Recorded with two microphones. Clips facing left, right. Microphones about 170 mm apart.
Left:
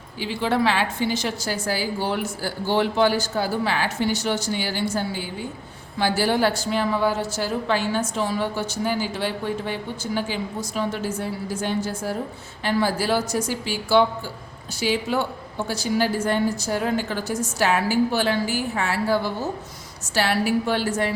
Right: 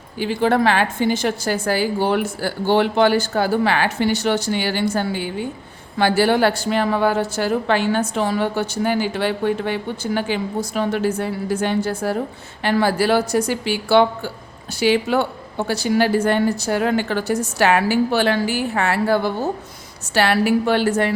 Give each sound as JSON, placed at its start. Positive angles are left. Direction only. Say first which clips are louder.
{"t": 0.2, "sound": "a woman's voice", "louder": "right 5 dB", "side_deg": -50}